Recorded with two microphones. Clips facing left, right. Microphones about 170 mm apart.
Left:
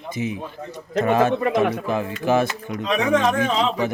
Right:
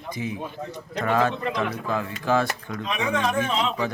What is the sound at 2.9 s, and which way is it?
Speech, 75° left (ahead or behind).